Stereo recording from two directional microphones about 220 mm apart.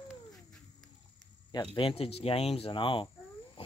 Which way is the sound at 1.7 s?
25° left (ahead or behind).